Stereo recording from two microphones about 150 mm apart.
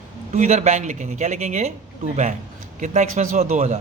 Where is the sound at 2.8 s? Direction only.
55° right (ahead or behind).